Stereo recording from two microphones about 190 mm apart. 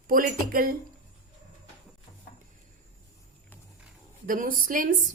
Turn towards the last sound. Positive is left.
turn(degrees=-45)  # may be behind; listen again after turning